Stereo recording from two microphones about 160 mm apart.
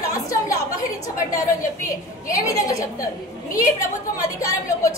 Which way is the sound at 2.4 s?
20° left (ahead or behind).